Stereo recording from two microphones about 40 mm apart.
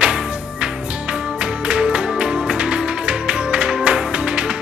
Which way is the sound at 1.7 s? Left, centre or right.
Right.